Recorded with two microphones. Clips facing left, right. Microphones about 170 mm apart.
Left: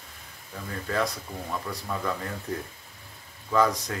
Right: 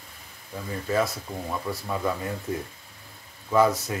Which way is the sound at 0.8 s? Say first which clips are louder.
Right 3 dB; 5° right (ahead or behind).